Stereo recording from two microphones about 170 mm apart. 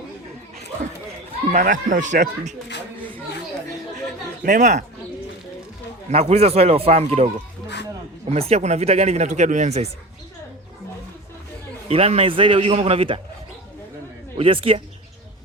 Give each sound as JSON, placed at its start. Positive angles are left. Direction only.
{"t": 1.5, "sound": "speech", "side_deg": -50}
{"t": 4.4, "sound": "speech", "side_deg": -50}
{"t": 6.1, "sound": "speech", "side_deg": -35}
{"t": 8.3, "sound": "speech", "side_deg": -40}
{"t": 11.9, "sound": "speech", "side_deg": -35}
{"t": 14.3, "sound": "speech", "side_deg": -35}